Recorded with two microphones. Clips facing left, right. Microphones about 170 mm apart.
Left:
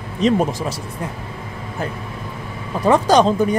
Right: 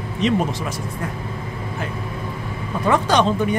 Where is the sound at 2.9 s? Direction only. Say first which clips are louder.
Left 4 dB; 35° left (ahead or behind).